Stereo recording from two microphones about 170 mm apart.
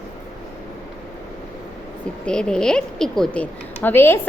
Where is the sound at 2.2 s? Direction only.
5° left (ahead or behind).